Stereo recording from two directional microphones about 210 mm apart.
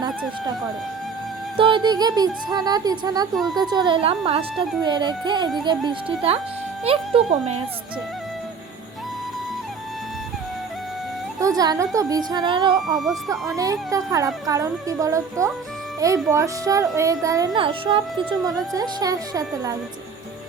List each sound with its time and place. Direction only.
1.5 s speech: 25° right (ahead or behind)
11.3 s a woman's voice: 15° right (ahead or behind)
13.0 s speech: centre (ahead or behind)
13.6 s speech: 15° right (ahead or behind)